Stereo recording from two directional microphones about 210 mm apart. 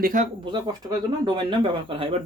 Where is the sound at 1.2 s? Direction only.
25° right (ahead or behind).